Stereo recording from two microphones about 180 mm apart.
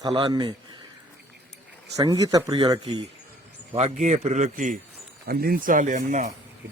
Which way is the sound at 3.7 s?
40° right (ahead or behind).